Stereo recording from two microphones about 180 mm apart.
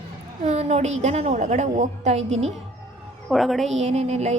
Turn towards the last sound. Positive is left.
turn(degrees=-35)  # may be behind; listen again after turning